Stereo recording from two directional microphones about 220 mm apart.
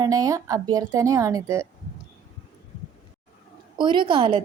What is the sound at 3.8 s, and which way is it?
Speech, 20° right (ahead or behind).